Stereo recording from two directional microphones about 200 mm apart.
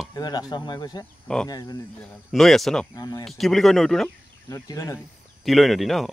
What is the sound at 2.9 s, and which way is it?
Speech, 15° left (ahead or behind).